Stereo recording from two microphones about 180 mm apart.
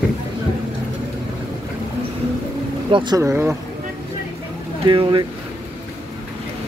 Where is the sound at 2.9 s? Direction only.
25° right (ahead or behind).